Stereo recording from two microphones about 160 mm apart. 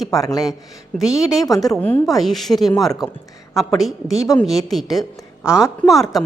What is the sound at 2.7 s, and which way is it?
Speech, 20° left (ahead or behind).